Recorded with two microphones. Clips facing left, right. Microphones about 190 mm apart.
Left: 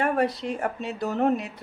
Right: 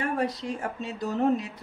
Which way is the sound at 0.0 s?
65° left (ahead or behind).